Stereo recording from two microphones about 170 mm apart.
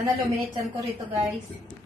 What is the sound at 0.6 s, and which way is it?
Speech, 15° right (ahead or behind).